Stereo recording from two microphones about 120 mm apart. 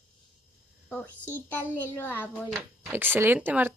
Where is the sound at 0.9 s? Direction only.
15° left (ahead or behind).